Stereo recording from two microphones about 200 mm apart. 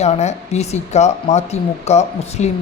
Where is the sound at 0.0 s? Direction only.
35° left (ahead or behind).